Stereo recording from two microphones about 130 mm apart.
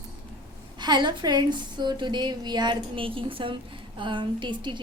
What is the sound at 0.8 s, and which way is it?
A woman's voice, 35° right (ahead or behind).